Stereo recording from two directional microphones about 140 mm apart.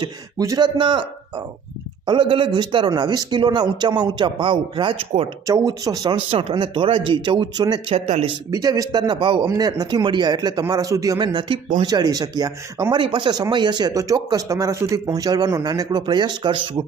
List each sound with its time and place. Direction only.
0.0 s speech: 25° right (ahead or behind)
2.0 s speech: 35° right (ahead or behind)
5.5 s speech: 25° right (ahead or behind)
6.1 s speech: 45° right (ahead or behind)
7.9 s speech: 55° right (ahead or behind)
8.4 s speech: 25° right (ahead or behind)
13.0 s speech: 35° right (ahead or behind)